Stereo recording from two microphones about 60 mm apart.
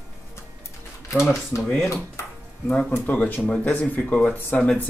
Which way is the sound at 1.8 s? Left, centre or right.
Left.